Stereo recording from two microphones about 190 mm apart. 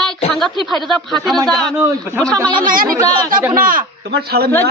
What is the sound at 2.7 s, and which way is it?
Speech, 50° right (ahead or behind).